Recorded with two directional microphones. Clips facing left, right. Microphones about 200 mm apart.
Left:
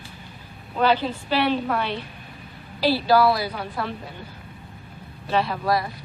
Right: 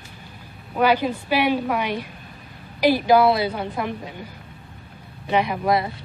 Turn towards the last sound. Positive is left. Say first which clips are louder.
# right 2 dB
turn(degrees=-20)  # may be behind; listen again after turning